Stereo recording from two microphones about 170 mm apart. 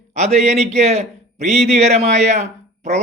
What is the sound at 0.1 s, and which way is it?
A man's voice, 45° right (ahead or behind).